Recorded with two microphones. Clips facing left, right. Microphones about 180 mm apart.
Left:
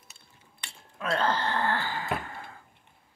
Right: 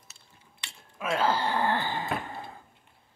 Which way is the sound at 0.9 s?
10° right (ahead or behind).